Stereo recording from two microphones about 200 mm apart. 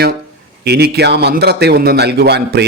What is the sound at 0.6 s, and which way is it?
Speech, 55° right (ahead or behind).